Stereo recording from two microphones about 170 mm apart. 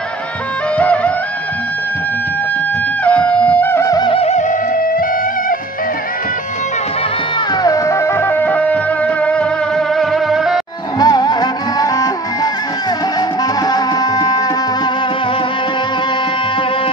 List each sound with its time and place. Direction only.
0.7 s music: 10° left (ahead or behind)
3.0 s music: 10° left (ahead or behind); by 5.0 s 45° left (ahead or behind)
7.6 s music: 20° left (ahead or behind); by 10.6 s centre (ahead or behind)
11.0 s music: 25° left (ahead or behind)
13.7 s tabla: 20° left (ahead or behind)